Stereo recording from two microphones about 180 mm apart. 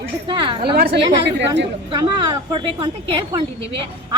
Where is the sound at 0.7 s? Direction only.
60° right (ahead or behind).